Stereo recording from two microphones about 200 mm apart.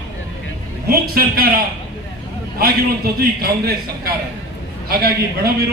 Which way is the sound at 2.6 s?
50° right (ahead or behind).